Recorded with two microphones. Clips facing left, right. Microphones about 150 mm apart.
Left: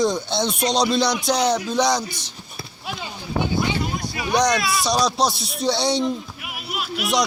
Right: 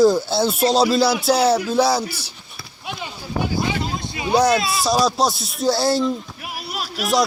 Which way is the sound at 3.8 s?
25° right (ahead or behind).